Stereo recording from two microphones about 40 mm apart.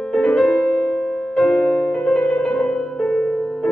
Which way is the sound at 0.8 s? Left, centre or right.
Right.